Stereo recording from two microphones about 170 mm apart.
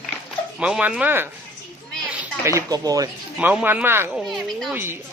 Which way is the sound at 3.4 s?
10° right (ahead or behind).